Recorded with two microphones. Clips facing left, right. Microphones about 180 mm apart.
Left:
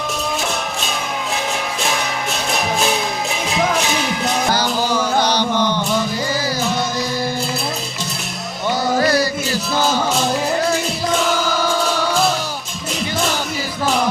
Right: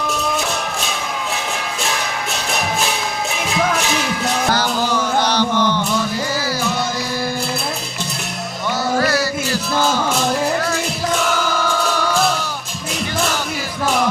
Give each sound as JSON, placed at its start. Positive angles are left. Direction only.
{"t": 4.5, "sound": "music", "side_deg": 10}
{"t": 9.0, "sound": "music", "side_deg": 15}